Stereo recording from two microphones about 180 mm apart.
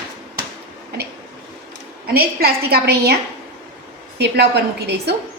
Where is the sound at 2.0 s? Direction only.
55° right (ahead or behind).